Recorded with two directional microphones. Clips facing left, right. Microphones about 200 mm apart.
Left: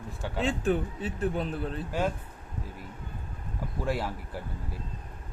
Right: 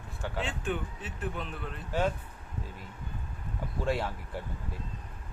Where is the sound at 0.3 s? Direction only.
40° left (ahead or behind).